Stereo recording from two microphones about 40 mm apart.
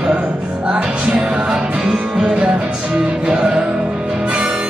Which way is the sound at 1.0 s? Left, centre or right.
Centre.